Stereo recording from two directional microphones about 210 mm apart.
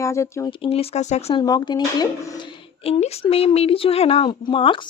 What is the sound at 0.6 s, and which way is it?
Speech, 30° left (ahead or behind).